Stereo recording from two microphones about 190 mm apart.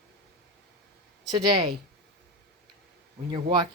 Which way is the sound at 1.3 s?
20° right (ahead or behind).